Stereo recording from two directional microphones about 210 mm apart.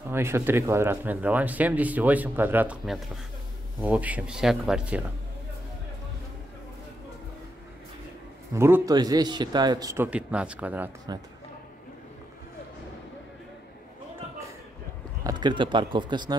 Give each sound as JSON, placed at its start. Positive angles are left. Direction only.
{"t": 0.1, "sound": "speech", "side_deg": -10}
{"t": 8.5, "sound": "speech", "side_deg": -10}
{"t": 11.1, "sound": "speech", "side_deg": -20}
{"t": 15.2, "sound": "speech", "side_deg": -20}